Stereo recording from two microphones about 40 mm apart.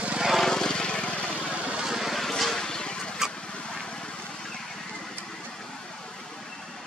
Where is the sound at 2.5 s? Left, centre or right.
Centre.